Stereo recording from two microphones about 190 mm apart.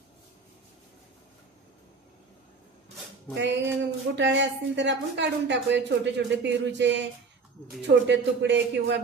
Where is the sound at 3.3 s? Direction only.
70° right (ahead or behind).